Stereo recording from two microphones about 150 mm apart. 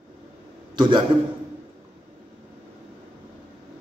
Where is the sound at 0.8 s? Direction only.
30° right (ahead or behind).